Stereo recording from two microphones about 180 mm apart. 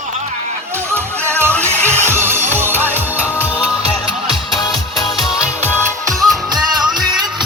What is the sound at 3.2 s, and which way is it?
Music, 10° left (ahead or behind).